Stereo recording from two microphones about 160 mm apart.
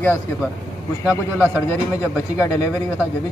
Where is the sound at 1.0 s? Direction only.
10° right (ahead or behind).